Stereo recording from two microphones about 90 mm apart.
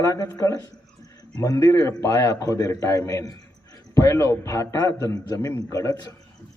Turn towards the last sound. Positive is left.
turn(degrees=40)  # may be behind; listen again after turning